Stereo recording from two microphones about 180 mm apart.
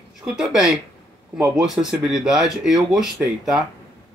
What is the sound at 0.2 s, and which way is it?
Speech, centre (ahead or behind).